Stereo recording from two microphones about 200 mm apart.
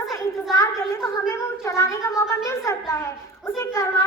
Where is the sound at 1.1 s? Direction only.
15° left (ahead or behind).